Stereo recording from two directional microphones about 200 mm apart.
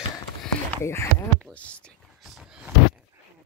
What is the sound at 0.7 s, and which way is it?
Speech, 15° left (ahead or behind).